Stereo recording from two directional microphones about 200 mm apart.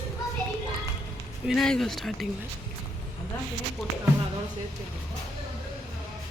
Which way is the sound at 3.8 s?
Centre (ahead or behind).